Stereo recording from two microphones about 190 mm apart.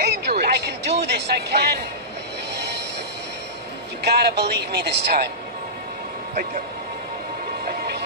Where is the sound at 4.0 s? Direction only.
60° right (ahead or behind).